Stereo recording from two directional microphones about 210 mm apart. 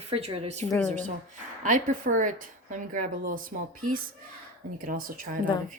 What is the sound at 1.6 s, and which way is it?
Speech, 40° right (ahead or behind).